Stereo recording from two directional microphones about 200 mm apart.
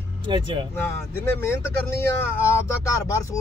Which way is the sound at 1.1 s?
10° left (ahead or behind).